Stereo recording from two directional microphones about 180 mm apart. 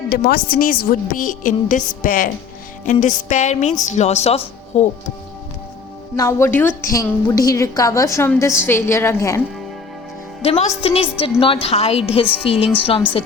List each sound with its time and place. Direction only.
0.1 s a woman's voice: 60° left (ahead or behind); by 4.9 s 35° left (ahead or behind)
6.1 s a woman's voice: 15° left (ahead or behind)
10.4 s a woman's voice: 35° left (ahead or behind)